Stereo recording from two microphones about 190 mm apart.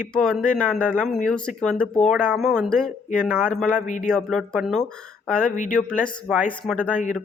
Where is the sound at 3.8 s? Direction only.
40° left (ahead or behind).